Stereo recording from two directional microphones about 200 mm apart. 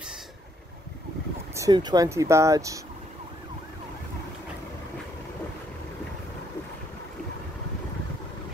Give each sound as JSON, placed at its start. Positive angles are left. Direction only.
{"t": 1.5, "sound": "speech", "side_deg": -20}